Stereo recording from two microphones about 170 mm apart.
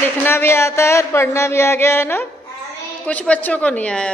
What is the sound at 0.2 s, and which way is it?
Speech, 15° left (ahead or behind).